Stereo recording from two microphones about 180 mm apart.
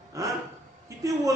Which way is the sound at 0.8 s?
20° right (ahead or behind).